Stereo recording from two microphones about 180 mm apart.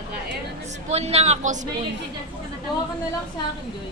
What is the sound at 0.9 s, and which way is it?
Speech, 35° right (ahead or behind).